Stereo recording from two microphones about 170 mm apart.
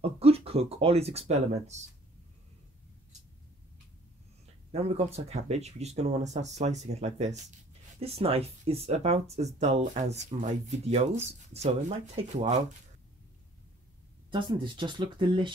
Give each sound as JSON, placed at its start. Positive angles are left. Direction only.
{"t": 0.0, "sound": "speech", "side_deg": -35}
{"t": 4.7, "sound": "speech", "side_deg": -35}
{"t": 12.2, "sound": "speech", "side_deg": -45}
{"t": 14.3, "sound": "speech", "side_deg": -30}